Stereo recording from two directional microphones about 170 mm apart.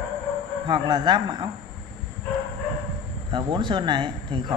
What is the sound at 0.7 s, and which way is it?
Speech, 25° right (ahead or behind).